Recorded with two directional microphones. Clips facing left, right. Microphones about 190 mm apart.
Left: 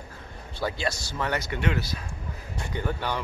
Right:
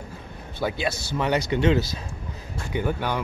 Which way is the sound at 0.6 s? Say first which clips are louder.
Right 3 dB; 20° right (ahead or behind).